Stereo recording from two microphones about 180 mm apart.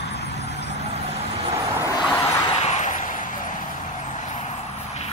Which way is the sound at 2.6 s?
40° left (ahead or behind).